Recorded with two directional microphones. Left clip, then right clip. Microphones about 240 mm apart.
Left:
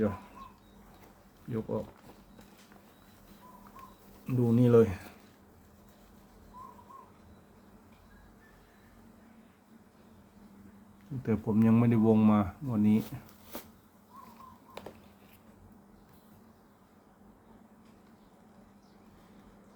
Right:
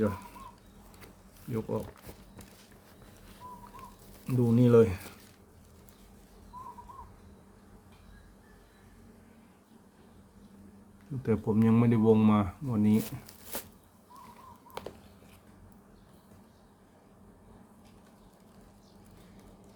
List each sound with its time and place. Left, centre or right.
1.5 s speech: centre
4.3 s speech: centre
11.2 s speech: centre
13.5 s a sound: right